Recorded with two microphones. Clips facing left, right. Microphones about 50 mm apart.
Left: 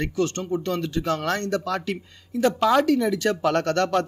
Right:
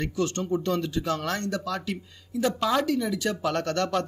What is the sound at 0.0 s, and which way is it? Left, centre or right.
Speech, left.